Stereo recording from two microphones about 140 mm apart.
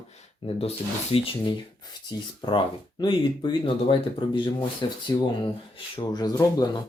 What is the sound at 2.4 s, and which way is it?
Speech, 35° left (ahead or behind).